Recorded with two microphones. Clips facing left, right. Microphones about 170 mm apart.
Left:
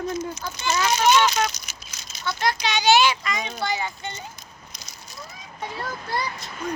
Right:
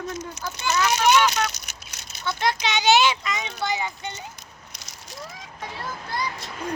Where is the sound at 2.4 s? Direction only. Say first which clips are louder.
Even; 20° right (ahead or behind).